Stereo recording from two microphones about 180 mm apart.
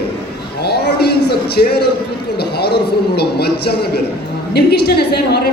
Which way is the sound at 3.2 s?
60° left (ahead or behind).